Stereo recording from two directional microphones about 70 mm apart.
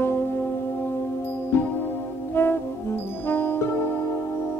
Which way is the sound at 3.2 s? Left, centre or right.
Left.